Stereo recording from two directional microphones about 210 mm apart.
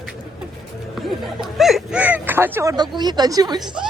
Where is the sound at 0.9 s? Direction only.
Centre (ahead or behind); by 3.6 s 20° right (ahead or behind).